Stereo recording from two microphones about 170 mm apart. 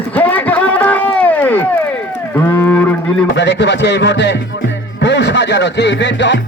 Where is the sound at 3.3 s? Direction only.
90° left.